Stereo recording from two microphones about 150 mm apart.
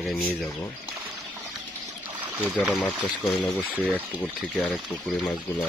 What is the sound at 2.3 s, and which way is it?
Speech, 10° right (ahead or behind).